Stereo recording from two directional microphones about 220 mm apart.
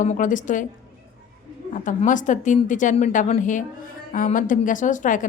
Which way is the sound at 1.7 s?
35° left (ahead or behind).